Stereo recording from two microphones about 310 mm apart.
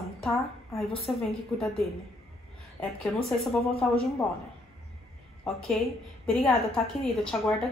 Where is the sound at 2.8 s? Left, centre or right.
Centre.